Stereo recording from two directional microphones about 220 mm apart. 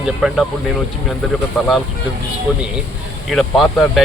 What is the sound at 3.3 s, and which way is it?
Speech, centre (ahead or behind).